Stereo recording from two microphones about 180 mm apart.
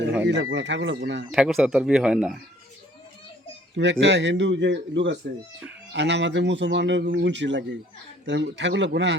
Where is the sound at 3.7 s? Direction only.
80° right.